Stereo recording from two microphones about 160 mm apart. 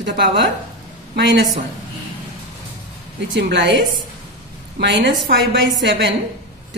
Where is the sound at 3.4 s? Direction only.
90° right.